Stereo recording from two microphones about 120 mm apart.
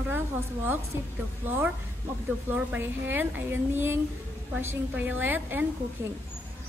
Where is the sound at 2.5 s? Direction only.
15° right (ahead or behind).